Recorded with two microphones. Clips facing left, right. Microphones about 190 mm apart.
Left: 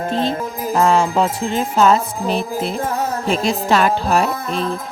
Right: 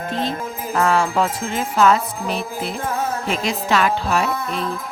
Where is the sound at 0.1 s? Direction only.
30° left (ahead or behind).